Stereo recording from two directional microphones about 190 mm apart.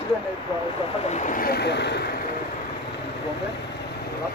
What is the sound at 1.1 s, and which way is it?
Speech, 40° left (ahead or behind).